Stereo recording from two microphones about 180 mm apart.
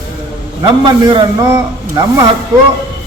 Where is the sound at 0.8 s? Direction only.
30° right (ahead or behind).